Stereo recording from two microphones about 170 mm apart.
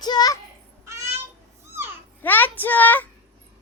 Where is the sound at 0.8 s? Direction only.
15° right (ahead or behind).